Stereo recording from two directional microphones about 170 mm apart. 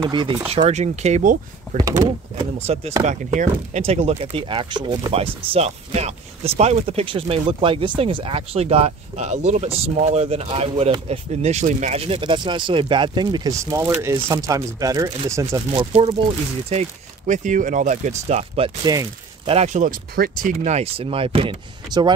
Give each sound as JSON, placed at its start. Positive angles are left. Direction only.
{"t": 0.0, "sound": "speech", "side_deg": -25}
{"t": 0.5, "sound": "speech", "side_deg": -40}
{"t": 1.8, "sound": "speech", "side_deg": -20}
{"t": 2.6, "sound": "speech", "side_deg": -40}
{"t": 15.7, "sound": "speech", "side_deg": -35}
{"t": 17.3, "sound": "speech", "side_deg": -45}